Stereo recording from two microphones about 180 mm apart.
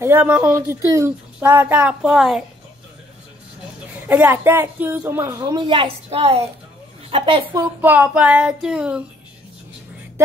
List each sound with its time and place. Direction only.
0.0 s speech: 10° right (ahead or behind)
4.1 s a child's voice: 10° right (ahead or behind); by 7.6 s 30° right (ahead or behind)
7.8 s child singing: 10° right (ahead or behind)